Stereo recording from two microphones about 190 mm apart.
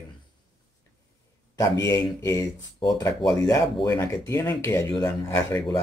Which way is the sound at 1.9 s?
15° left (ahead or behind).